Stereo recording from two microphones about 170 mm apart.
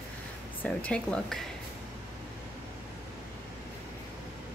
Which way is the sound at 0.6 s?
5° left (ahead or behind).